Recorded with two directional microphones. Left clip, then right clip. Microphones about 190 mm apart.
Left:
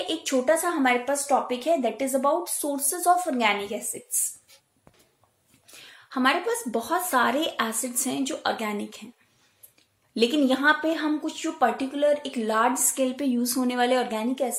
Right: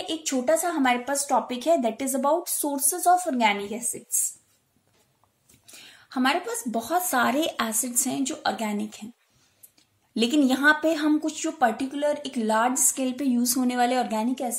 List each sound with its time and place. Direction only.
0.0 s a woman's voice: 25° right (ahead or behind)
5.7 s a woman's voice: 30° right (ahead or behind)
10.1 s a woman's voice: 30° right (ahead or behind)